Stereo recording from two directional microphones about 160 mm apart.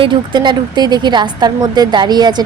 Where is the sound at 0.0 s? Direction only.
30° right (ahead or behind).